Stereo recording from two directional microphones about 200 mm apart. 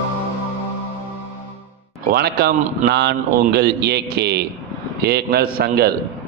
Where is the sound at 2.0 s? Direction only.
55° right (ahead or behind).